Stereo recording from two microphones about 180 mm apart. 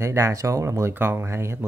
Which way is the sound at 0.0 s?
15° right (ahead or behind).